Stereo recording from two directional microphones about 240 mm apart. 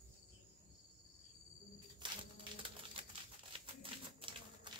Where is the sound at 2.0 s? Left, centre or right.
Right.